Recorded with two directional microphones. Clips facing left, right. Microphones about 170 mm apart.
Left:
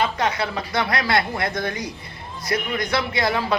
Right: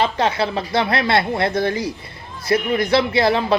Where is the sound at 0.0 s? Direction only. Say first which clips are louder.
Right 4 dB; 30° right (ahead or behind).